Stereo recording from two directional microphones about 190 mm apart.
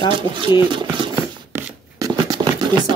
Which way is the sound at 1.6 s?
20° right (ahead or behind).